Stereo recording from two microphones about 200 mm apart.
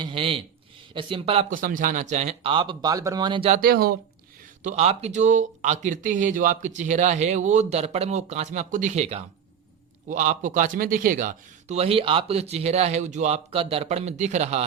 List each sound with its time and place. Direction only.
0.0 s speech: 25° right (ahead or behind)
1.6 s speech: 40° right (ahead or behind); by 3.5 s 25° right (ahead or behind)
3.5 s speech: 50° right (ahead or behind)
4.6 s speech: 35° right (ahead or behind)